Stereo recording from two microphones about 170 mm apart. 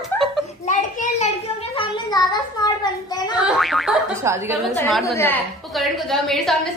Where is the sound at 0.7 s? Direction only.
40° left (ahead or behind).